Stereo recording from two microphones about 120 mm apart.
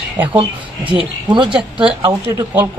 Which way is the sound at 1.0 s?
40° right (ahead or behind).